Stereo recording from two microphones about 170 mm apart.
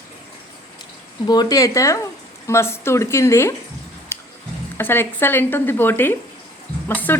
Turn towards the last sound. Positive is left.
turn(degrees=10)  # may be behind; listen again after turning